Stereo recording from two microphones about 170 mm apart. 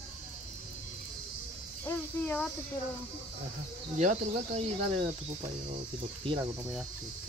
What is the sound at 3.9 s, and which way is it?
Speech, 40° right (ahead or behind).